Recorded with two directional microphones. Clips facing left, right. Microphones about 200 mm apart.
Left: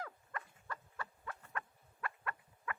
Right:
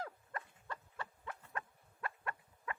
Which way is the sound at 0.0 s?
25° right (ahead or behind).